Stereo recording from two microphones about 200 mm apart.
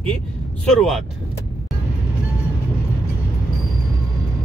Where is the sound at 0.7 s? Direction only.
Centre (ahead or behind).